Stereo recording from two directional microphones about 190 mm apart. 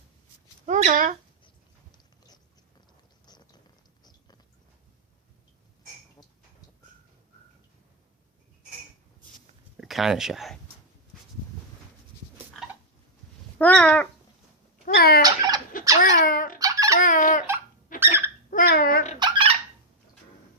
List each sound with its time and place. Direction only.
0.6 s speech: 40° right (ahead or behind)
1.9 s biting: 20° left (ahead or behind)
3.2 s a sound: 20° left (ahead or behind)
9.7 s speech: centre (ahead or behind)
13.6 s speech: 5° left (ahead or behind)
14.9 s fowl: 55° left (ahead or behind)
15.2 s fowl: 20° right (ahead or behind)
16.0 s a sound: 45° left (ahead or behind)
16.6 s squeak: 15° right (ahead or behind)
17.0 s baby laughter: 45° left (ahead or behind)
18.0 s dog: 10° right (ahead or behind)
18.5 s babbling: 50° left (ahead or behind)
19.2 s fowl: 25° right (ahead or behind)